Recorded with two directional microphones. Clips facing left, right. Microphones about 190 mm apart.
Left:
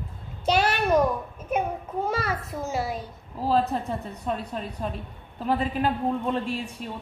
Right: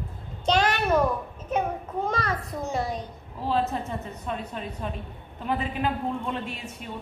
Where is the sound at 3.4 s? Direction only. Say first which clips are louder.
Left 3 dB; 40° left (ahead or behind).